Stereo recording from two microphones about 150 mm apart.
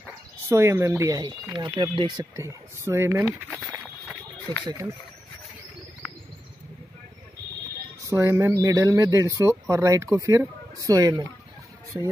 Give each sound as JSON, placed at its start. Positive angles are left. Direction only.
{"t": 0.5, "sound": "speech", "side_deg": -15}
{"t": 2.3, "sound": "speech", "side_deg": -20}
{"t": 3.4, "sound": "speech", "side_deg": 10}
{"t": 4.6, "sound": "speech", "side_deg": -20}
{"t": 8.1, "sound": "speech", "side_deg": -20}